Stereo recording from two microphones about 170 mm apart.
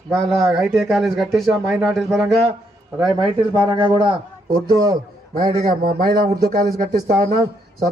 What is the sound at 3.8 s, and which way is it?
Speech, 30° right (ahead or behind).